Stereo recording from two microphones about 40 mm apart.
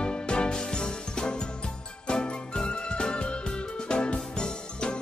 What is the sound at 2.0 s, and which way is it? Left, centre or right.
Music, left.